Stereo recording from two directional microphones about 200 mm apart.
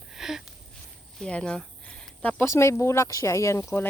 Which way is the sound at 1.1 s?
5° left (ahead or behind).